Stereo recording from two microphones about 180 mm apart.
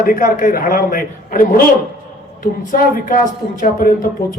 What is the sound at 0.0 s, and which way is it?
Speech, 50° left (ahead or behind).